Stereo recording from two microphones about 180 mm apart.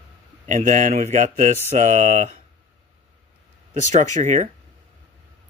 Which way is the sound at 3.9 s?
40° right (ahead or behind).